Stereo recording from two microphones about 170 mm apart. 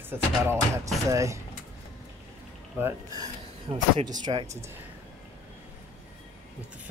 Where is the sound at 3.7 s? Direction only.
35° right (ahead or behind).